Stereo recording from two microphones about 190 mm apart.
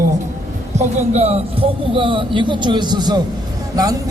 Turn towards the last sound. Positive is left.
turn(degrees=-20)  # may be behind; listen again after turning